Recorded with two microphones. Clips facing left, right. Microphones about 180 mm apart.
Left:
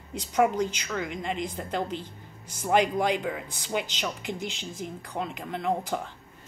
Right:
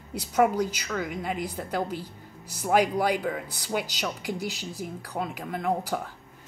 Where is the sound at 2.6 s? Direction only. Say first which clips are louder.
Right 1 dB; 10° right (ahead or behind).